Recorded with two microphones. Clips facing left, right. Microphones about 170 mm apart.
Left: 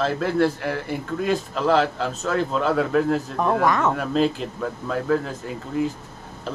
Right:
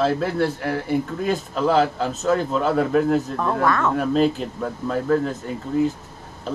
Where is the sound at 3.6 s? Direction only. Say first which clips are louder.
Right 2 dB; 15° left (ahead or behind).